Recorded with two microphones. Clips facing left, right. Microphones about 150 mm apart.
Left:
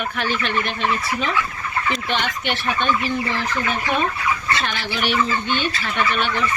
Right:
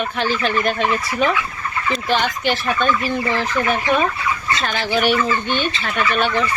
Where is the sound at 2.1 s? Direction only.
35° right (ahead or behind).